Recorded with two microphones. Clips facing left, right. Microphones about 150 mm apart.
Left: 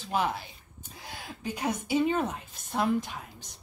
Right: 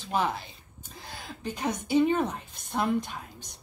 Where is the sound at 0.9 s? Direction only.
10° left (ahead or behind).